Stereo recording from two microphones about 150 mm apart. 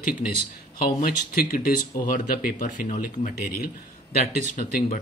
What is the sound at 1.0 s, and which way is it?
Speech, 75° left (ahead or behind).